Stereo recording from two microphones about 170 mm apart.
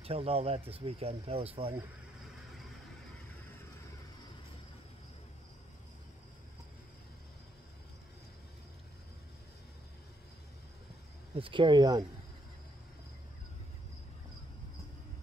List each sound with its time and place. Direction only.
0.0 s speech: 35° right (ahead or behind)
11.3 s speech: 30° right (ahead or behind)